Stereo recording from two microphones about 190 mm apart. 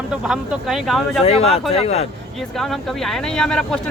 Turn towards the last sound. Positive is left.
turn(degrees=5)  # may be behind; listen again after turning